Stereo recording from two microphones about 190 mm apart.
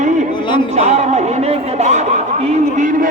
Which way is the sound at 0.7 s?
35° right (ahead or behind).